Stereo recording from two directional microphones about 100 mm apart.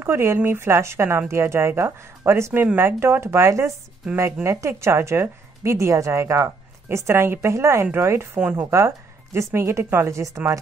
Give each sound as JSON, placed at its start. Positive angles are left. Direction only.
{"t": 0.0, "sound": "a woman's voice", "side_deg": -25}